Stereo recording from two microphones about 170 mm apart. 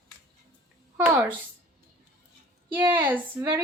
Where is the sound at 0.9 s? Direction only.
10° right (ahead or behind).